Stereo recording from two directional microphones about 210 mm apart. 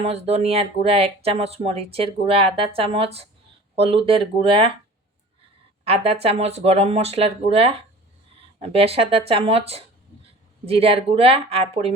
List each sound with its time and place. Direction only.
0.0 s speech: 30° right (ahead or behind)
5.8 s speech: 30° right (ahead or behind)